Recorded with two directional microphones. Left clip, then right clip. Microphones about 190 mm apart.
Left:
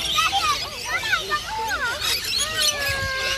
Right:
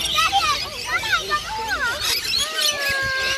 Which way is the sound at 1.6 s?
35° right (ahead or behind).